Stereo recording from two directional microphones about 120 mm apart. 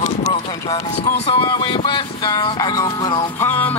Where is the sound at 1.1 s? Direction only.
55° left (ahead or behind); by 3.3 s 35° left (ahead or behind).